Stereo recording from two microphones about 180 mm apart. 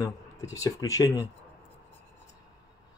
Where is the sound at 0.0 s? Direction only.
15° left (ahead or behind).